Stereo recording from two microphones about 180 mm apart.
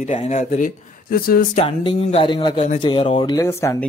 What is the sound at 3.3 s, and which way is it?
Speech, 15° left (ahead or behind).